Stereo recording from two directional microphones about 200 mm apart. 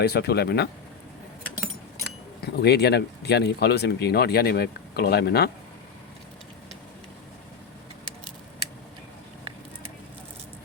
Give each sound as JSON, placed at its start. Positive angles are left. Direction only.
{"t": 0.0, "sound": "speech", "side_deg": 55}
{"t": 2.4, "sound": "speech", "side_deg": 55}